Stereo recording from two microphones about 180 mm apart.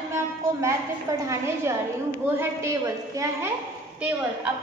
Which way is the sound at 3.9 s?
5° right (ahead or behind).